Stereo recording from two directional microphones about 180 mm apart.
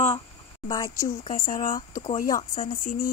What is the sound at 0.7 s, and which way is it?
A woman's voice, 20° left (ahead or behind).